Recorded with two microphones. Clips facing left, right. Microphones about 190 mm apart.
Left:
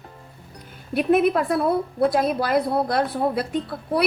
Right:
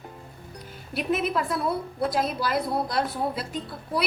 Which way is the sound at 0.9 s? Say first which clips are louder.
Left 8 dB; 55° left (ahead or behind).